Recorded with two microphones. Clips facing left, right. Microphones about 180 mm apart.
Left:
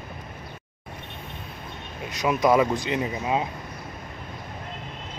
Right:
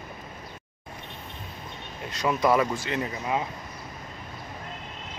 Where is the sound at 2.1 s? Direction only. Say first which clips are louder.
Left 3 dB; 15° left (ahead or behind).